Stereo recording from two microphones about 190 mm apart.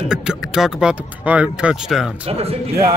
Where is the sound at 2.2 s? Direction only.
30° right (ahead or behind).